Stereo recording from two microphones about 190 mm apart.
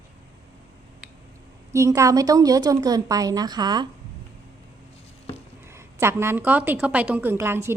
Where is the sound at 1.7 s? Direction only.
15° right (ahead or behind).